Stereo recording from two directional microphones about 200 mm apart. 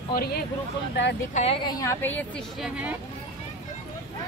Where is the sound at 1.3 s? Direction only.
30° left (ahead or behind).